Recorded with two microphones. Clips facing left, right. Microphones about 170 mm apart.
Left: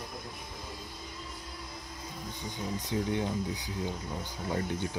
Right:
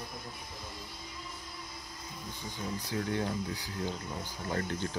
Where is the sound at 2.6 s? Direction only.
20° left (ahead or behind).